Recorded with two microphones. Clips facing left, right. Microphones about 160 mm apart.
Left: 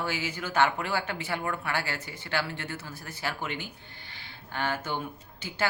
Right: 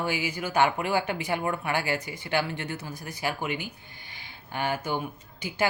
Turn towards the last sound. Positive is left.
turn(degrees=-15)  # may be behind; listen again after turning